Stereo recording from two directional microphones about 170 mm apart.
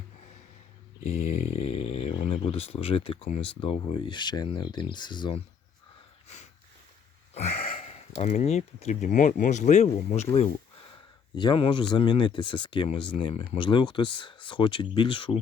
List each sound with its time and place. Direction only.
1.0 s a sound: 40° left (ahead or behind)
3.4 s speech: 30° left (ahead or behind)
6.2 s sniff: 40° left (ahead or behind)
7.9 s speech: 40° left (ahead or behind)
11.3 s speech: 30° left (ahead or behind)